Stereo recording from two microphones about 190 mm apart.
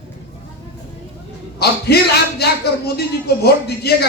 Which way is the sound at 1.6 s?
55° left (ahead or behind).